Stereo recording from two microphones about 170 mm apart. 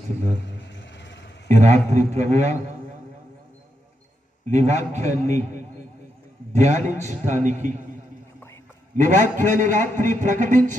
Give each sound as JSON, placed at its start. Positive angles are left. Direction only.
{"t": 0.7, "sound": "vehicle", "side_deg": 90}
{"t": 1.5, "sound": "a man's voice", "side_deg": -45}
{"t": 4.5, "sound": "a man's voice", "side_deg": -45}
{"t": 8.9, "sound": "a man's voice", "side_deg": -50}